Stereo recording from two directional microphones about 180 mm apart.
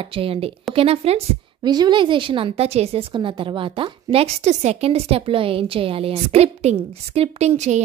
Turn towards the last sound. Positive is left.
turn(degrees=-40)  # may be behind; listen again after turning